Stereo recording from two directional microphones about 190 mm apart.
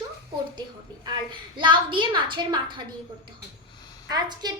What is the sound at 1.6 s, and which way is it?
A woman's voice, 25° right (ahead or behind).